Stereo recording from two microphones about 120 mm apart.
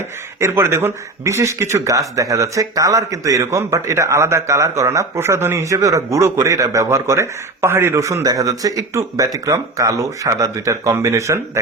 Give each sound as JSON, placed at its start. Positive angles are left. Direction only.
{"t": 0.3, "sound": "speech", "side_deg": -20}